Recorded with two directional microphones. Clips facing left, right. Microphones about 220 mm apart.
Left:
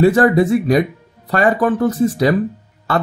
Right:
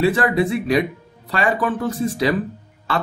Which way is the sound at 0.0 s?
45° left (ahead or behind).